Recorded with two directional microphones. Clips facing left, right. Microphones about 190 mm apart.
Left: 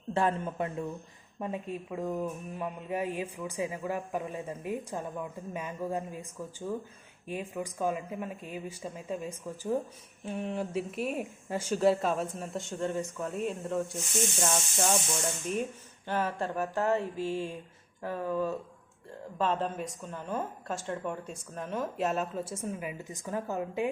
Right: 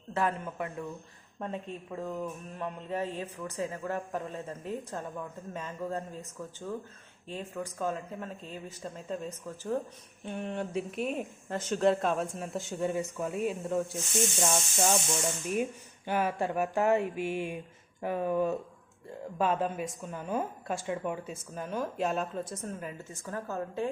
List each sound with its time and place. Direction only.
0.1 s speech: 25° left (ahead or behind)
1.4 s a man's voice: 10° left (ahead or behind)
10.2 s a woman's voice: centre (ahead or behind)
16.0 s a sound: 10° right (ahead or behind)
19.4 s a woman's voice: 10° right (ahead or behind); by 23.9 s 15° left (ahead or behind)